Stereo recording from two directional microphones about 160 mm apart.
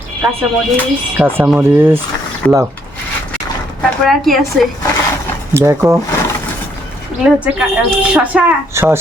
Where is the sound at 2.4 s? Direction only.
10° left (ahead or behind).